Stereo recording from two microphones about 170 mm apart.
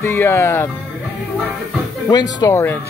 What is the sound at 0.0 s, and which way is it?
Speech, 15° left (ahead or behind).